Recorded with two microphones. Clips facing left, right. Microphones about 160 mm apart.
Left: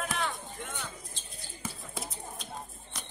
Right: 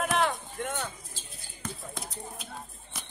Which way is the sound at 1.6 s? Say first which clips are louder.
Right 1 dB; 5° left (ahead or behind).